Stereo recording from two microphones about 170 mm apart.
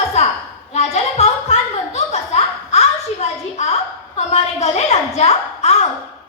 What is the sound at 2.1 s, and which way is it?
Laughter, 40° left (ahead or behind).